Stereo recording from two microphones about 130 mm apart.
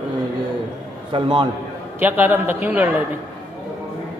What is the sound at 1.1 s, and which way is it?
Speech, 35° right (ahead or behind).